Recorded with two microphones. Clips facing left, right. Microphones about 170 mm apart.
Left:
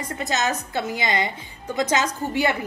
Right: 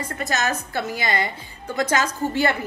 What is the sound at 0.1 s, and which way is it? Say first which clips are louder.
A woman's voice: left 1 dB; 20° left (ahead or behind).